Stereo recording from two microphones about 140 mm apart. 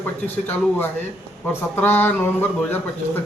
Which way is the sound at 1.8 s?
15° left (ahead or behind).